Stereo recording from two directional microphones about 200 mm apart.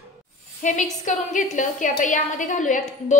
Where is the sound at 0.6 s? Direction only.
40° left (ahead or behind).